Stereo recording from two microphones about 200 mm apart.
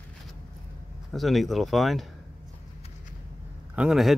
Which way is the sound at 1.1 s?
Centre (ahead or behind).